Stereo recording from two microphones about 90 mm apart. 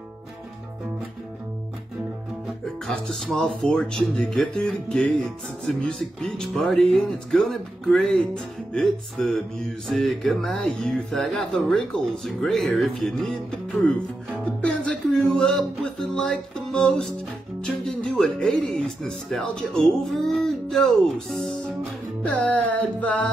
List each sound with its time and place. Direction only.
2.9 s speech: 10° left (ahead or behind)
14.4 s music: 15° left (ahead or behind)
17.6 s speech: 10° left (ahead or behind)